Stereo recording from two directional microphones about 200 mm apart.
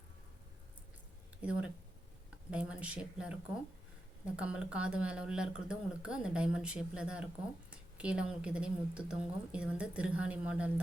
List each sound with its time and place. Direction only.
1.4 s speech: 5° right (ahead or behind)
4.4 s speech: 5° right (ahead or behind)